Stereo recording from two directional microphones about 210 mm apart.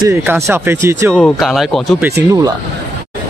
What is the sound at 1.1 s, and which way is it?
Speech, centre (ahead or behind).